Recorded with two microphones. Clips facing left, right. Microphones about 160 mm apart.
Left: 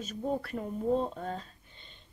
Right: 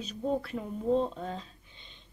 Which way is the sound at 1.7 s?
45° left (ahead or behind).